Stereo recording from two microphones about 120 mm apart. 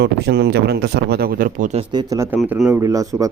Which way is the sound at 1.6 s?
70° right (ahead or behind).